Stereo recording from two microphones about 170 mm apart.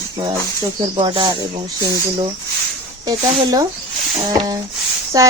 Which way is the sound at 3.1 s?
20° right (ahead or behind).